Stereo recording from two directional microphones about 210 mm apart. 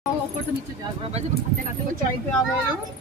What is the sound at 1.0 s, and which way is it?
Speech, 30° right (ahead or behind).